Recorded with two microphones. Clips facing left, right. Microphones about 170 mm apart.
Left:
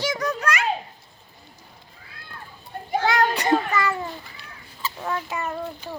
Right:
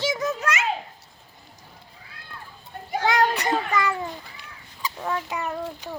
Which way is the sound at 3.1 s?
20° right (ahead or behind).